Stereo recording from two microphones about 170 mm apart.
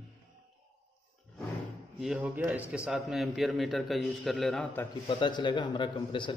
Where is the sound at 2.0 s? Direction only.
Centre (ahead or behind).